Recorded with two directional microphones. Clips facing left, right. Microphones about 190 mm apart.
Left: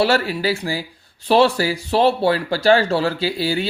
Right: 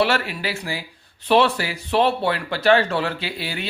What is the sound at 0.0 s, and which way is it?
Speech, 35° left (ahead or behind).